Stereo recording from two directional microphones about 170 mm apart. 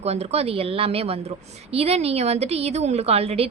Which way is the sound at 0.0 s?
40° right (ahead or behind).